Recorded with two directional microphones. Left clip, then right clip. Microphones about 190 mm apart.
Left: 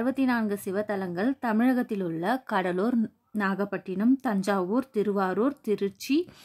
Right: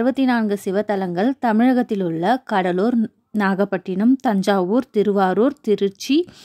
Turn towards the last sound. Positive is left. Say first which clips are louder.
# right 8 dB
turn(degrees=-30)  # may be behind; listen again after turning